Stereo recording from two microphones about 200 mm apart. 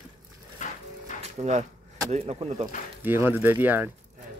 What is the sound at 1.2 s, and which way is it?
Music, 35° right (ahead or behind).